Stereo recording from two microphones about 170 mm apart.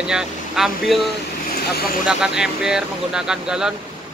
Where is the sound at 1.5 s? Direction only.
65° left (ahead or behind).